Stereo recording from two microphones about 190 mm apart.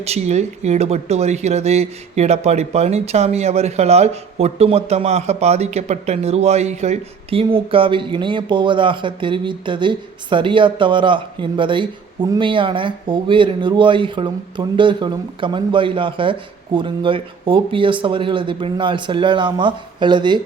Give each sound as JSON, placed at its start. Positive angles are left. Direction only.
{"t": 0.0, "sound": "speech", "side_deg": -35}